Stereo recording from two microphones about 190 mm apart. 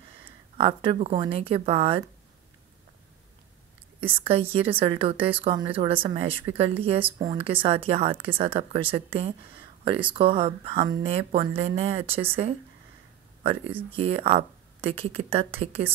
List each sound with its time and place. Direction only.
0.6 s speech: 30° right (ahead or behind)
4.0 s speech: 30° right (ahead or behind)
13.4 s speech: 30° right (ahead or behind)